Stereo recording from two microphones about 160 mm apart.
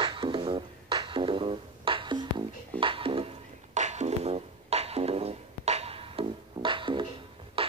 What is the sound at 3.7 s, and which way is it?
Music, 45° right (ahead or behind).